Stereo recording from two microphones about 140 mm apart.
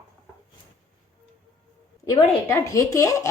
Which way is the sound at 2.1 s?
25° left (ahead or behind).